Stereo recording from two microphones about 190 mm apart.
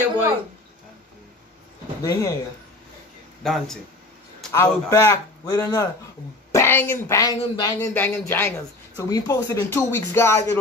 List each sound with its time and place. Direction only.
2.0 s speech: 15° left (ahead or behind)
3.4 s speech: centre (ahead or behind)
4.5 s speech: 15° left (ahead or behind)